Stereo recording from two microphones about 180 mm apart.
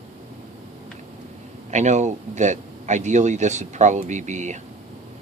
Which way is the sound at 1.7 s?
40° right (ahead or behind).